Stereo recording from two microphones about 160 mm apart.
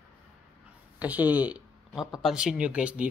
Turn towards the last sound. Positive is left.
turn(degrees=-5)  # may be behind; listen again after turning